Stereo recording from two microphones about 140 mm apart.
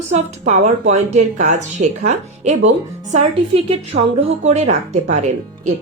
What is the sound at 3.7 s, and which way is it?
Speech, 50° right (ahead or behind).